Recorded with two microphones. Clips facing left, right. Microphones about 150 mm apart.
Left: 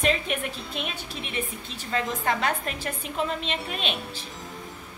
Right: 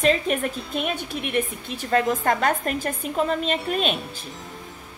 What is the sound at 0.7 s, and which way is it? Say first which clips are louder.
A woman's voice: right 7 dB; 55° right (ahead or behind).